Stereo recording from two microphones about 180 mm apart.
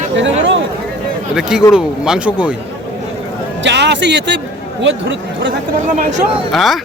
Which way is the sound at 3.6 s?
75° right (ahead or behind).